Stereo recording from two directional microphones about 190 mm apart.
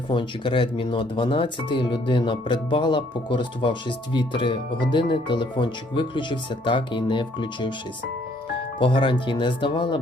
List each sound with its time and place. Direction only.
0.1 s speech: 25° left (ahead or behind)
8.8 s speech: 25° left (ahead or behind)